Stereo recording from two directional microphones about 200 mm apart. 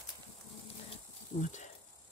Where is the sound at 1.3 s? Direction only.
35° left (ahead or behind).